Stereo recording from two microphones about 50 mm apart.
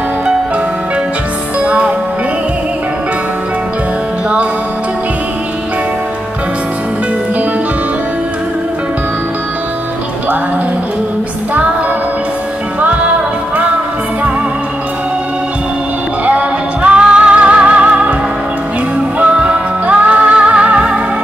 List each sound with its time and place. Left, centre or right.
1.6 s music: right
12.8 s music: right
16.3 s music: right
19.1 s music: right